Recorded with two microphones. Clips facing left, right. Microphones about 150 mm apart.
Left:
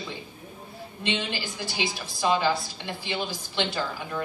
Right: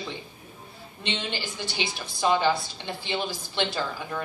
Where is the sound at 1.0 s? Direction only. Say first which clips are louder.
Left 2 dB; 25° right (ahead or behind).